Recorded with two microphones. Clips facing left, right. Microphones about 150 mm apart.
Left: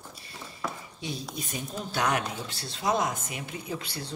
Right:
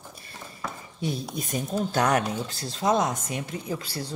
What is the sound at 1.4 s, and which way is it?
Speech, 45° right (ahead or behind).